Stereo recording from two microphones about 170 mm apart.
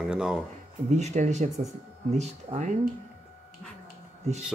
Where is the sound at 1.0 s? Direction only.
45° right (ahead or behind).